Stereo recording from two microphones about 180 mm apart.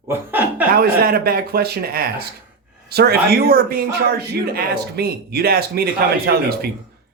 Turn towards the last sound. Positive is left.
turn(degrees=-60)  # may be behind; listen again after turning